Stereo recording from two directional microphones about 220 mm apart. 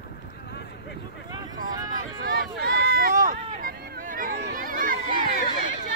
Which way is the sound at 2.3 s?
45° right (ahead or behind).